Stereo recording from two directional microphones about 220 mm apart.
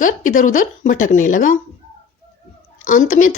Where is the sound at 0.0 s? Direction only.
35° left (ahead or behind).